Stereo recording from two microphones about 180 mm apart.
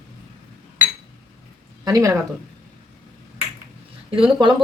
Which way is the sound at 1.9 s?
20° right (ahead or behind).